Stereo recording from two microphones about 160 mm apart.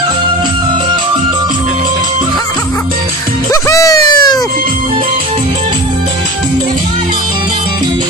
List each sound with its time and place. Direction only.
3.6 s music: 20° left (ahead or behind)